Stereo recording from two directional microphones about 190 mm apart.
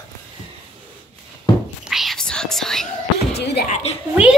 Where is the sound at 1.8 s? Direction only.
Centre (ahead or behind).